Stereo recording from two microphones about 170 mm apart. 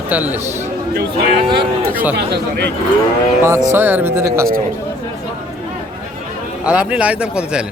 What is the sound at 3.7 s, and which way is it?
Speech, 10° right (ahead or behind).